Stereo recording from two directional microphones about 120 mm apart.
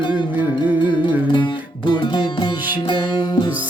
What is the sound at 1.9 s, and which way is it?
Music, 40° left (ahead or behind).